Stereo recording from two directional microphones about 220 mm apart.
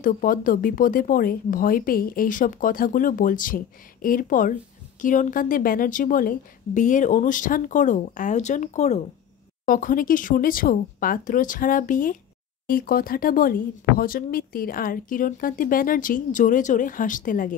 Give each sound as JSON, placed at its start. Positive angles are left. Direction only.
{"t": 0.0, "sound": "speech", "side_deg": 40}